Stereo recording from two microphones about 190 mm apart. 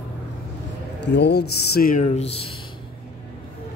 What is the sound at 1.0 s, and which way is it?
A man's voice, 65° left (ahead or behind).